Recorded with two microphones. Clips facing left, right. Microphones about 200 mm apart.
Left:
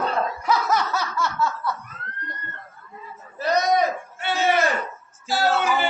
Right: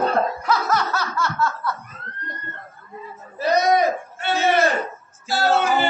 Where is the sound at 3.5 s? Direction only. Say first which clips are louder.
Right 3 dB; 5° right (ahead or behind).